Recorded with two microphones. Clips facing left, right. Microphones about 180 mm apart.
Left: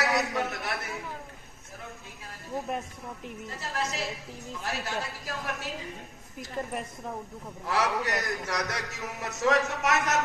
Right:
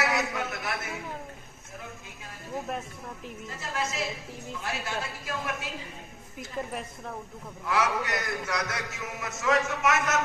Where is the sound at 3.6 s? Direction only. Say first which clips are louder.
Right 1 dB; 35° left (ahead or behind).